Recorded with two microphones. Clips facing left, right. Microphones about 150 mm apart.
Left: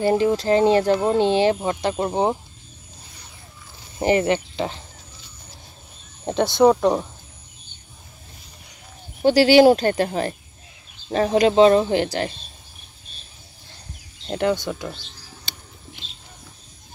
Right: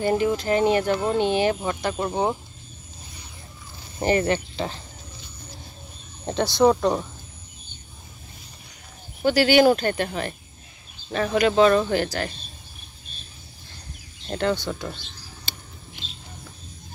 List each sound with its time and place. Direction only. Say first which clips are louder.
0.0 s speech: left 3 dB; 30° left (ahead or behind)
4.0 s speech: left 3 dB; 20° left (ahead or behind)
6.2 s speech: left 3 dB; 20° left (ahead or behind)
9.2 s speech: left 4 dB; 30° left (ahead or behind)
14.2 s speech: left 2 dB; 20° left (ahead or behind)